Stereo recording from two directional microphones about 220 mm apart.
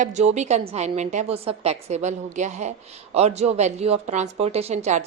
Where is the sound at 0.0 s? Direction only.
30° right (ahead or behind).